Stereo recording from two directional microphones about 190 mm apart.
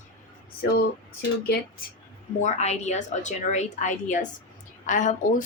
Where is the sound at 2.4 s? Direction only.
35° left (ahead or behind).